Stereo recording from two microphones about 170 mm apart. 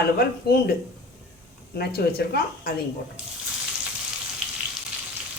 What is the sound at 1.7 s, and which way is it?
Speech, 65° left (ahead or behind).